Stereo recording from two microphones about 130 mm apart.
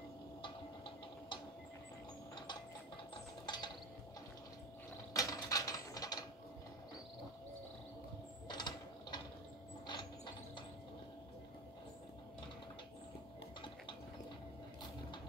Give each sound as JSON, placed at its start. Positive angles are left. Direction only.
{"t": 0.4, "sound": "tick-tock", "side_deg": 40}
{"t": 3.4, "sound": "mechanisms", "side_deg": 35}
{"t": 5.1, "sound": "mechanisms", "side_deg": 30}
{"t": 8.5, "sound": "mechanisms", "side_deg": 35}